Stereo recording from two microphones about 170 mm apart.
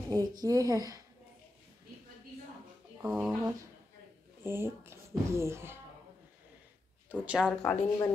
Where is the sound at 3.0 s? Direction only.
10° right (ahead or behind).